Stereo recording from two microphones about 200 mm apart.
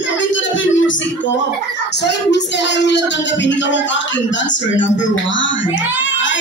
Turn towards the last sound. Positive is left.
turn(degrees=70)  # may be behind; listen again after turning